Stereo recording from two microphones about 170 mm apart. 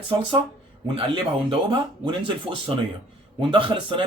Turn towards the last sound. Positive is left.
turn(degrees=-30)  # may be behind; listen again after turning